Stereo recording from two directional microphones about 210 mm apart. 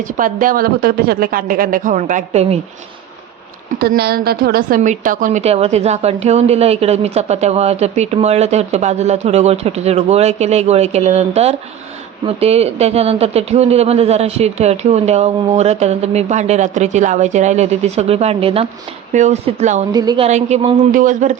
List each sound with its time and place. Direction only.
0.0 s a woman's voice: 40° right (ahead or behind)
3.8 s a woman's voice: 50° right (ahead or behind); by 19.8 s 30° right (ahead or behind)
19.9 s a woman's voice: 20° right (ahead or behind)
20.2 s a woman's voice: 30° right (ahead or behind)